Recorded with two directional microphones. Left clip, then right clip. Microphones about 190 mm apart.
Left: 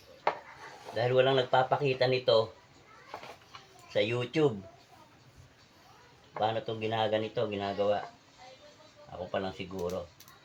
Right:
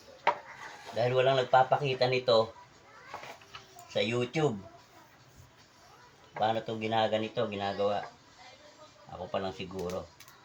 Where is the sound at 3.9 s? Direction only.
40° left (ahead or behind).